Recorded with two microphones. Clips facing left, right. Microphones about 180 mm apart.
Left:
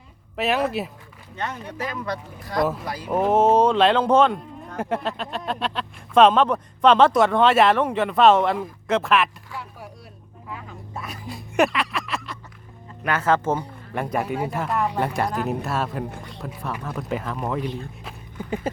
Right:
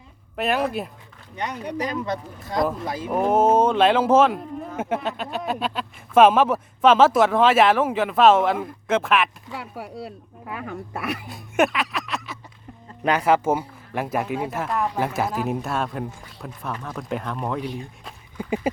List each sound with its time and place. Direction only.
0.3 s speech: centre (ahead or behind)
1.4 s speech: 15° right (ahead or behind)
2.6 s speech: 5° left (ahead or behind)
2.8 s speech: 25° right (ahead or behind)
3.1 s speech: centre (ahead or behind)
9.6 s speech: 70° right (ahead or behind)
11.3 s speech: centre (ahead or behind)
13.1 s speech: 15° right (ahead or behind); by 17.7 s centre (ahead or behind)
18.3 s a sound: 10° right (ahead or behind)